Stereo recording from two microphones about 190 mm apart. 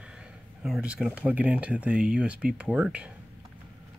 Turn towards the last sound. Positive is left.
turn(degrees=-5)  # may be behind; listen again after turning